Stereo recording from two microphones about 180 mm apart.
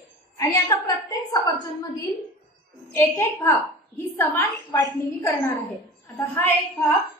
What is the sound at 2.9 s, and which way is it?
A woman's voice, 15° left (ahead or behind).